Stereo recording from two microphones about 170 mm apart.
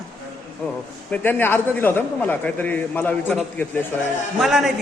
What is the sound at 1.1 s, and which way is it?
A man's voice, 10° left (ahead or behind).